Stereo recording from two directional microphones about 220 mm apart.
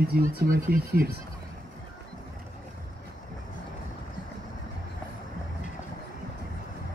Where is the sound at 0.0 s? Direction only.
45° right (ahead or behind).